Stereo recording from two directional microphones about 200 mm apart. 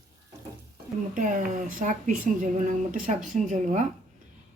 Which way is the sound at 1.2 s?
40° right (ahead or behind).